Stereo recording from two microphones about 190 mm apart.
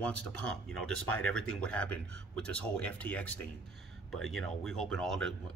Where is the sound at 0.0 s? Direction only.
5° left (ahead or behind).